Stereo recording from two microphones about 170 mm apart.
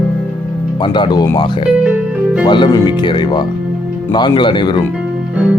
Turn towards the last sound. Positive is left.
turn(degrees=-5)  # may be behind; listen again after turning